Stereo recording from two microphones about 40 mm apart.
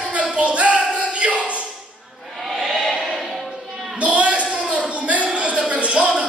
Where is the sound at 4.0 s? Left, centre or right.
Right.